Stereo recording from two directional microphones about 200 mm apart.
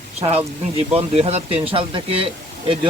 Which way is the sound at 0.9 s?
30° right (ahead or behind).